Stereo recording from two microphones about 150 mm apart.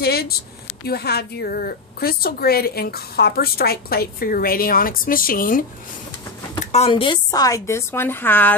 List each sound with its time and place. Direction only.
0.0 s a sound: 90° left
0.8 s a woman's voice: 90° left; by 5.7 s 65° left (ahead or behind)
6.9 s a woman's voice: 30° left (ahead or behind); by 8.5 s 15° left (ahead or behind)